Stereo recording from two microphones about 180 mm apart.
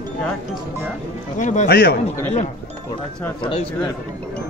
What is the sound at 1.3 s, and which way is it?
Speech, 40° left (ahead or behind).